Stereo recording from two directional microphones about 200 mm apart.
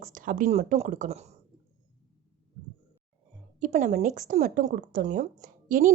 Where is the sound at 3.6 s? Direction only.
40° right (ahead or behind).